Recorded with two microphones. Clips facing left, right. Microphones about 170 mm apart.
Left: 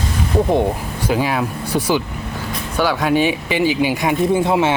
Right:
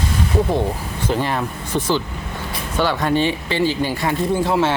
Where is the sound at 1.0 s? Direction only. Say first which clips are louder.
Left 2 dB; 5° left (ahead or behind).